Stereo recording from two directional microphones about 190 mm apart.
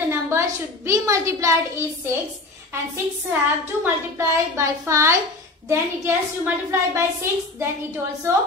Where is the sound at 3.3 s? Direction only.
15° right (ahead or behind).